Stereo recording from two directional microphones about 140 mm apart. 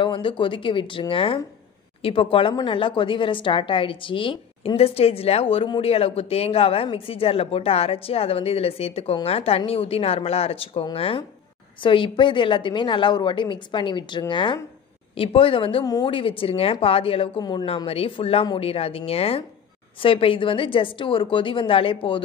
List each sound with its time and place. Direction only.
0.0 s a woman's voice: 35° left (ahead or behind)
15.8 s speech: 25° left (ahead or behind)
16.1 s a woman's voice: 40° left (ahead or behind)